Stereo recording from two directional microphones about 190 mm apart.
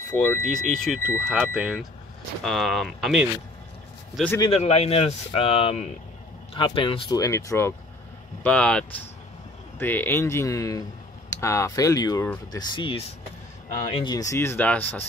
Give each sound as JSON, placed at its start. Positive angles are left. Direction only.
{"t": 0.1, "sound": "speech", "side_deg": 5}
{"t": 4.4, "sound": "speech", "side_deg": 30}